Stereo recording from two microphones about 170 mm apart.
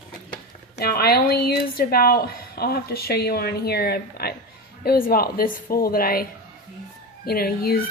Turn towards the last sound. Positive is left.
turn(degrees=65)  # may be behind; listen again after turning